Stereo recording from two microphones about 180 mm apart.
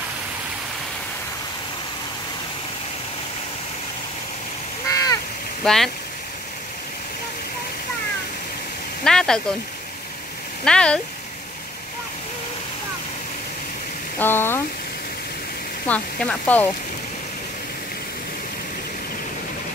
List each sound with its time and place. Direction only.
4.8 s a sound: 20° left (ahead or behind)
5.6 s speech: centre (ahead or behind)
9.0 s speech: 5° left (ahead or behind)
10.6 s speech: 5° left (ahead or behind)
14.1 s speech: 10° left (ahead or behind)
15.9 s speech: 5° left (ahead or behind)